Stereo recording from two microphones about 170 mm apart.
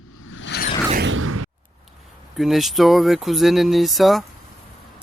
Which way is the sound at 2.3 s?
Centre (ahead or behind).